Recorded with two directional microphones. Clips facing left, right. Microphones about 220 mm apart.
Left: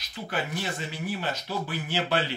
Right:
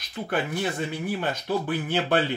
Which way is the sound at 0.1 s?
55° right (ahead or behind).